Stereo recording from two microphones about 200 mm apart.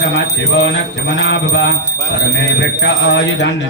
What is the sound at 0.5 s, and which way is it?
Speech, 60° left (ahead or behind).